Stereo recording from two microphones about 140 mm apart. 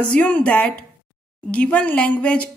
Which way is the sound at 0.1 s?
10° left (ahead or behind).